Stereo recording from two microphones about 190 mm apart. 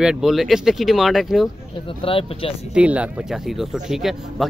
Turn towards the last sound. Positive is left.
turn(degrees=0)  # may be behind; listen again after turning